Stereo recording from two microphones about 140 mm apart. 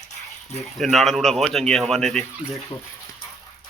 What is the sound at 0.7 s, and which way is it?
Speech, centre (ahead or behind).